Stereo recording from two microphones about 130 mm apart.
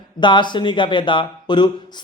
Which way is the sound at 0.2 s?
35° left (ahead or behind).